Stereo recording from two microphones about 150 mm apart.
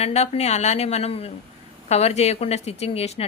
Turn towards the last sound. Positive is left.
turn(degrees=45)  # may be behind; listen again after turning